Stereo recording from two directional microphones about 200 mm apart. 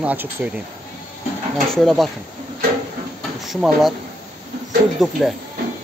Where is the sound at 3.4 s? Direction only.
Centre (ahead or behind).